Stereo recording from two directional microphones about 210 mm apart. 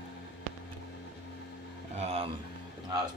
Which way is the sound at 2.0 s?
30° right (ahead or behind).